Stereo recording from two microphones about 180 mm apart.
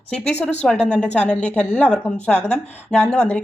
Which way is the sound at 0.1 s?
5° left (ahead or behind).